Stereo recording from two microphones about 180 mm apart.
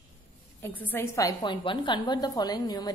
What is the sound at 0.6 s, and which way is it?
A woman's voice, 10° left (ahead or behind).